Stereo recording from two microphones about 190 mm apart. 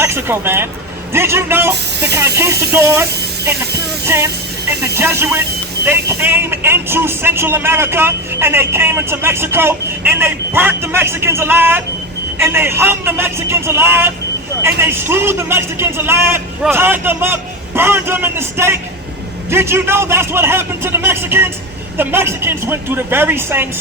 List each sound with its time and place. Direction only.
0.0 s speech: 10° right (ahead or behind)
1.7 s speech: 60° right (ahead or behind)
2.1 s speech: 15° right (ahead or behind)